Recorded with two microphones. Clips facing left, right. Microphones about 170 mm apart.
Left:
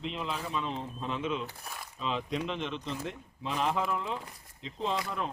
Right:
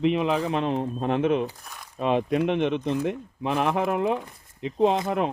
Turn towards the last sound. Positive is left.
turn(degrees=-70)  # may be behind; listen again after turning